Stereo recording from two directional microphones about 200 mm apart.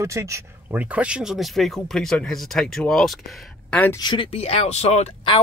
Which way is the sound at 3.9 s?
25° left (ahead or behind).